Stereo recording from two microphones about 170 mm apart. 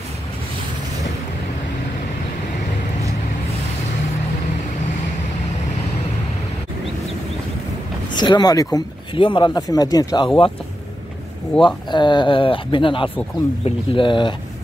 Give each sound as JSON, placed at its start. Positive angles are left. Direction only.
{"t": 8.1, "sound": "speech", "side_deg": 25}
{"t": 11.6, "sound": "speech", "side_deg": 25}